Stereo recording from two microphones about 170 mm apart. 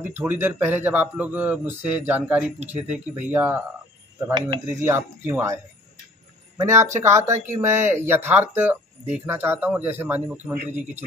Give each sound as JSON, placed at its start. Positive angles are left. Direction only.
{"t": 0.0, "sound": "speech", "side_deg": -15}
{"t": 4.3, "sound": "speech", "side_deg": -25}
{"t": 6.6, "sound": "speech", "side_deg": -15}